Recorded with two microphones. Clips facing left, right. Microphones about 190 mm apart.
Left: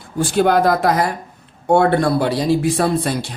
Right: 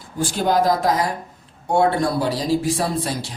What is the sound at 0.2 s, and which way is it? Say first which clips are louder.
Speech: left 4 dB; 60° left (ahead or behind).